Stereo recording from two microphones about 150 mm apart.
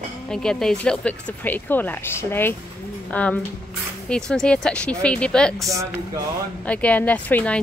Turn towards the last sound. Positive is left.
turn(degrees=10)  # may be behind; listen again after turning